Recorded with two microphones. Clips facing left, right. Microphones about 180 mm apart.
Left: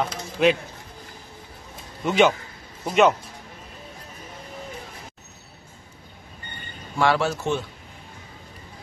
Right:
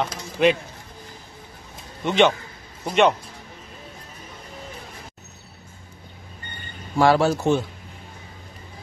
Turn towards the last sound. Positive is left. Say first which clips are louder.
# right 5 dB
turn(degrees=-40)  # may be behind; listen again after turning